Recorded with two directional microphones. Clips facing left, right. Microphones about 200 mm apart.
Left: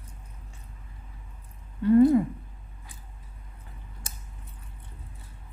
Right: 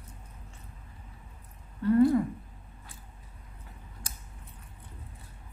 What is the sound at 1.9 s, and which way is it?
Speech, 20° left (ahead or behind).